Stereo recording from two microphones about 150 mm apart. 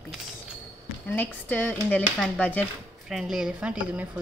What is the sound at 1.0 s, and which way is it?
Speech, 10° left (ahead or behind).